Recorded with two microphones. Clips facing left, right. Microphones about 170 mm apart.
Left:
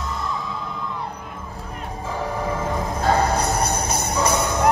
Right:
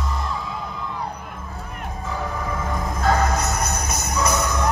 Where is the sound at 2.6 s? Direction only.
30° left (ahead or behind).